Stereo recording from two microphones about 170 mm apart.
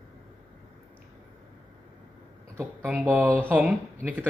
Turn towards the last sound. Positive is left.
turn(degrees=-10)  # may be behind; listen again after turning